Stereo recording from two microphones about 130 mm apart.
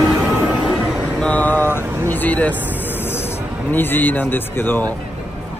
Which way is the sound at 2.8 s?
15° left (ahead or behind).